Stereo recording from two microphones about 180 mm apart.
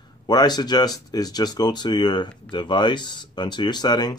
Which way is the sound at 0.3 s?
25° left (ahead or behind).